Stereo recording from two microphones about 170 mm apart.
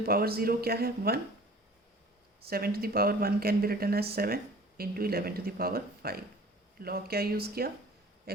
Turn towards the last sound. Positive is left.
turn(degrees=-65)  # may be behind; listen again after turning